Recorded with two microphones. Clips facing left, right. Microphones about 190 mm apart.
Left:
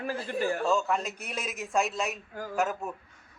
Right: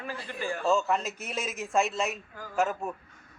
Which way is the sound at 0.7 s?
Centre (ahead or behind).